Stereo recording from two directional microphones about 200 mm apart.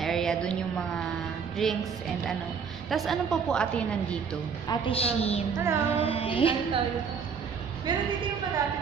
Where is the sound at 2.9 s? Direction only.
Centre (ahead or behind).